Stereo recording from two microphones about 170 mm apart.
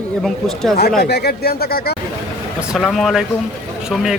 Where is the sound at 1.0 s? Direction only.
70° left (ahead or behind).